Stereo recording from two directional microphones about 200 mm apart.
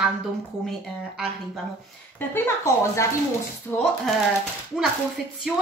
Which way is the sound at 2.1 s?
10° left (ahead or behind).